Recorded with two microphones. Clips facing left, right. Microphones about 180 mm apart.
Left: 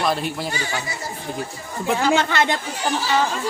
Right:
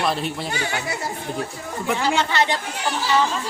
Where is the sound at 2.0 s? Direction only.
45° left (ahead or behind).